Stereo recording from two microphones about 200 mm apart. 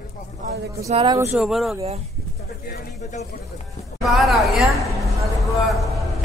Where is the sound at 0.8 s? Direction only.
30° right (ahead or behind).